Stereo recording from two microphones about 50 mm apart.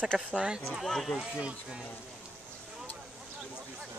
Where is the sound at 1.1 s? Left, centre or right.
Centre.